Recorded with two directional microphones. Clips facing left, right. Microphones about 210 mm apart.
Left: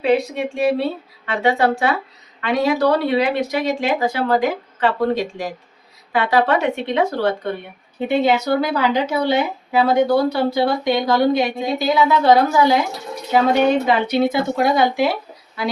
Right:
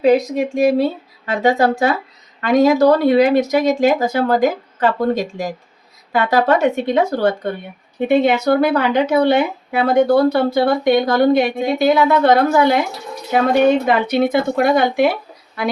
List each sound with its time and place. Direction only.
0.0 s speech: 40° right (ahead or behind)
8.0 s a woman's voice: 55° right (ahead or behind)
13.8 s speech: 55° right (ahead or behind)